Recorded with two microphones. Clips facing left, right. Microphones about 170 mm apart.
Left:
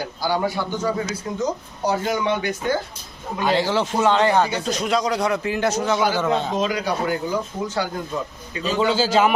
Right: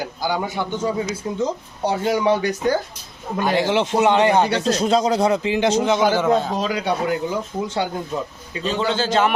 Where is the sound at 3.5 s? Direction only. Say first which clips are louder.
Right 1 dB; 15° right (ahead or behind).